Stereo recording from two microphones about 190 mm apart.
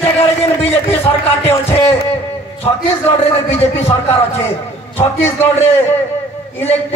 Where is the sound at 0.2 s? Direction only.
30° left (ahead or behind).